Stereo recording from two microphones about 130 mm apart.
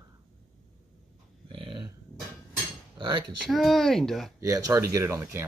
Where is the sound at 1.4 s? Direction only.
40° right (ahead or behind).